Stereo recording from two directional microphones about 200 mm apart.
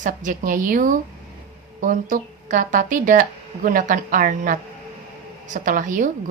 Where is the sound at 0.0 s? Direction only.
40° right (ahead or behind).